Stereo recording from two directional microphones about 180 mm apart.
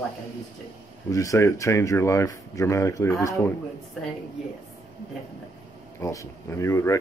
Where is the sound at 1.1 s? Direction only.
15° left (ahead or behind).